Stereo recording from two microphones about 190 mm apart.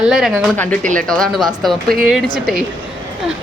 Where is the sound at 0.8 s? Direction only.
40° right (ahead or behind).